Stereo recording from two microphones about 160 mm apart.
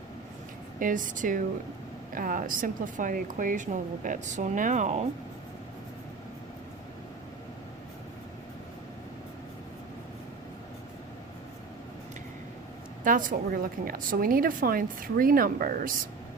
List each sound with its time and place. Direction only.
0.8 s a woman's voice: 55° right (ahead or behind)
13.1 s a woman's voice: 60° right (ahead or behind)